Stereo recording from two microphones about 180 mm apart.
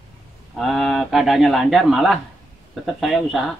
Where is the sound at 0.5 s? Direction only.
Centre (ahead or behind).